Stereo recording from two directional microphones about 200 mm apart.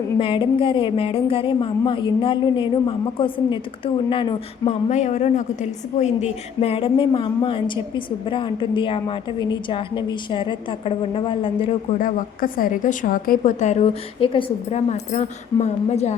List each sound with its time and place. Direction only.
0.2 s a woman's voice: 25° left (ahead or behind)
11.9 s speech: 45° left (ahead or behind)